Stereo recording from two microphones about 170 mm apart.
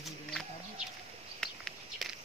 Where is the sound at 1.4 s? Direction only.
Centre (ahead or behind).